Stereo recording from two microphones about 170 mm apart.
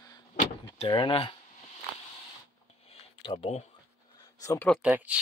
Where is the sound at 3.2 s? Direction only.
35° left (ahead or behind).